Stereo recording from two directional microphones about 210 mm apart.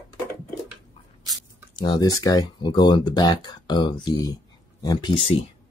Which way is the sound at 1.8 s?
20° left (ahead or behind).